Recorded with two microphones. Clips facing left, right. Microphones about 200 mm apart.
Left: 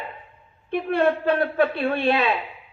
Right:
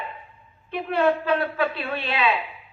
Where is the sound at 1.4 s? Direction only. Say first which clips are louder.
Left 5 dB; 50° left (ahead or behind).